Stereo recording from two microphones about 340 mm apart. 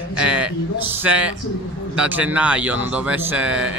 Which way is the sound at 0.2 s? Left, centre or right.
Centre.